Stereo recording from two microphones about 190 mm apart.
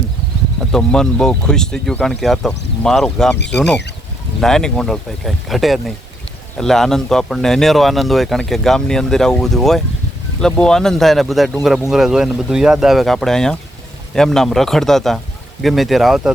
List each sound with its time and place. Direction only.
0.6 s speech: 5° left (ahead or behind)